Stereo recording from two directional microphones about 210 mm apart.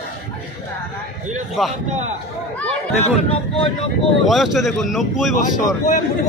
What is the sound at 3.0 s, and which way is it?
Speech, 30° left (ahead or behind).